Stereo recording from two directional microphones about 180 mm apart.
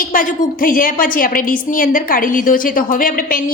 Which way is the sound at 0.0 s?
50° left (ahead or behind).